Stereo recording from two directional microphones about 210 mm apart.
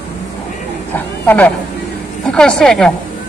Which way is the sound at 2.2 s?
5° left (ahead or behind).